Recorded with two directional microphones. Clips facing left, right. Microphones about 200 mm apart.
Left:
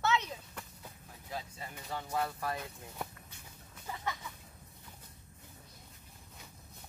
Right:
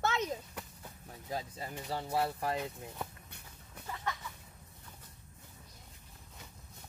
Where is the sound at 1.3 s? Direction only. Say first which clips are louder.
Right 4 dB; 35° right (ahead or behind).